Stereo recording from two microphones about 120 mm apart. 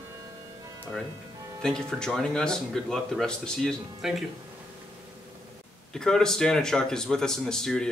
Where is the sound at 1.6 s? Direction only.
5° left (ahead or behind).